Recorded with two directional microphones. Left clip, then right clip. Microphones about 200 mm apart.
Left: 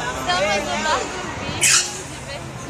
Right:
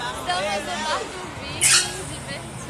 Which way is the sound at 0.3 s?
10° left (ahead or behind).